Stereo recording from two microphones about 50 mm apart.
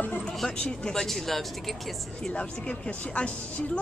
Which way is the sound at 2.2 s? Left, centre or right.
Left.